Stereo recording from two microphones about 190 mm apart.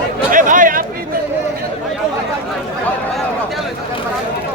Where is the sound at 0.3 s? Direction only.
45° right (ahead or behind).